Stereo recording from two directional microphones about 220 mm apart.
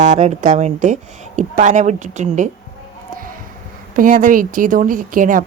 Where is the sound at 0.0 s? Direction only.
30° right (ahead or behind).